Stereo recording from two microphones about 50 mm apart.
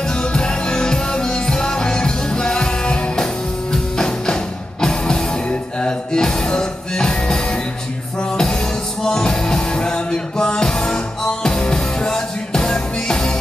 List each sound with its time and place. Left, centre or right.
0.1 s music: centre